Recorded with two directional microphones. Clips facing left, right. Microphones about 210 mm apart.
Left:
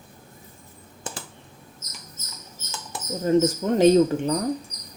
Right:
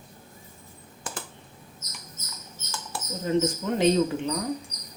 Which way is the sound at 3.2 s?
45° left (ahead or behind).